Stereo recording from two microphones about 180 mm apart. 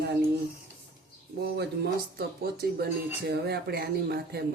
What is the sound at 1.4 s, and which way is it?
Speech, 65° right (ahead or behind).